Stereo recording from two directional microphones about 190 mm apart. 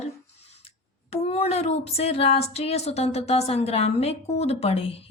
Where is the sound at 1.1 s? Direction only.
35° left (ahead or behind).